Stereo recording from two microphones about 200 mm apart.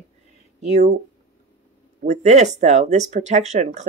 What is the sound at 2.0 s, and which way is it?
Speech, 35° right (ahead or behind).